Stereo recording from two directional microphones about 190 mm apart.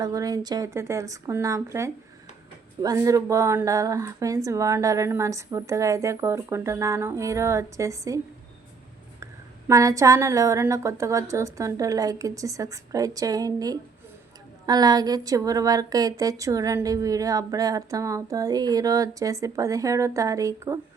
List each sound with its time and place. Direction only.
0.0 s a woman's voice: 20° right (ahead or behind)
9.2 s a woman's voice: 15° right (ahead or behind)